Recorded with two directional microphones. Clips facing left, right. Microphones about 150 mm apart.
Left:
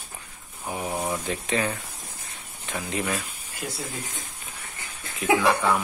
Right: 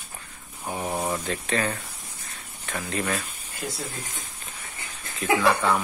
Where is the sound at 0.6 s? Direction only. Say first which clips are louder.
Right 1 dB; centre (ahead or behind).